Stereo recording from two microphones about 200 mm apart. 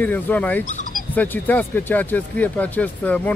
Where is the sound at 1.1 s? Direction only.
10° left (ahead or behind).